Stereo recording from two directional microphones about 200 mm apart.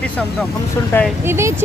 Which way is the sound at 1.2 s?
15° right (ahead or behind).